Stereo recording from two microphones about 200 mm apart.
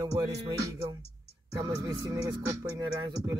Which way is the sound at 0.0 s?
15° right (ahead or behind).